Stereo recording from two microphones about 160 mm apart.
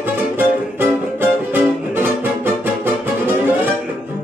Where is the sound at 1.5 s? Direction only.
15° right (ahead or behind).